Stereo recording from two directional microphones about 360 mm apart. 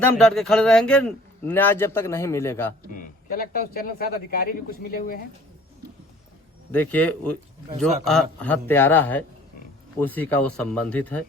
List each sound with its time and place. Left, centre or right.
0.2 s a man's voice: centre
3.0 s a man's voice: left
6.7 s a man's voice: centre